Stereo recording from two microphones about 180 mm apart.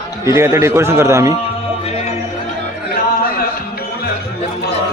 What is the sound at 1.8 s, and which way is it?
Music, 35° left (ahead or behind).